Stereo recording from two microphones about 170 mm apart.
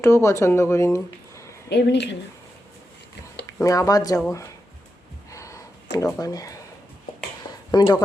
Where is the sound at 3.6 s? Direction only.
20° left (ahead or behind).